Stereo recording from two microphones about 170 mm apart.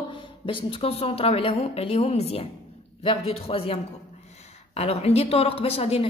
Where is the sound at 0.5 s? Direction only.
35° left (ahead or behind).